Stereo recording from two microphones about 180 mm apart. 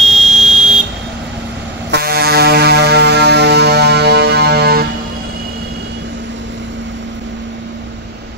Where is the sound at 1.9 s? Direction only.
60° right (ahead or behind).